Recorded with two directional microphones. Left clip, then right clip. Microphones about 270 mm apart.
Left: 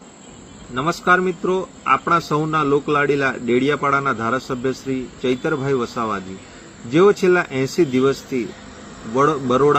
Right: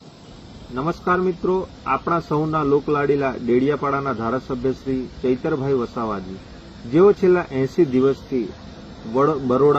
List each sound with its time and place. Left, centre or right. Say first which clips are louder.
0.8 s a man's voice: left 4 dB; centre
9.1 s a man's voice: left 2 dB; centre